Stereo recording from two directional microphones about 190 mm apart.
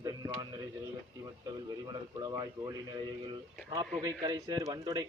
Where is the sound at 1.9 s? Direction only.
20° right (ahead or behind).